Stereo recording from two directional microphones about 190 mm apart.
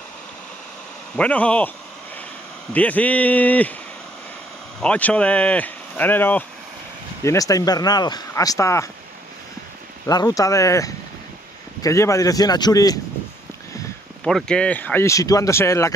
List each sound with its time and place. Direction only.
1.1 s speech: 5° left (ahead or behind)
2.7 s speech: 10° left (ahead or behind)
4.7 s speech: 5° left (ahead or behind)
10.0 s speech: 20° left (ahead or behind)
14.2 s speech: 5° left (ahead or behind)